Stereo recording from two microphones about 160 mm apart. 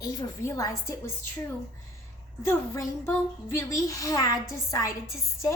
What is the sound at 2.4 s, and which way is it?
A woman's voice, 15° left (ahead or behind).